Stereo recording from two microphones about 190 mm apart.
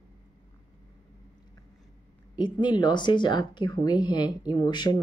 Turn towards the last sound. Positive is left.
turn(degrees=20)  # may be behind; listen again after turning